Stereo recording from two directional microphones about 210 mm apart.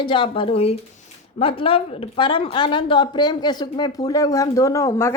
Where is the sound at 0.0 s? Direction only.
25° left (ahead or behind).